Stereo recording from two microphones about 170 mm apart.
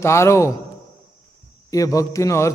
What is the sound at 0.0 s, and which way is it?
Speech, 15° left (ahead or behind).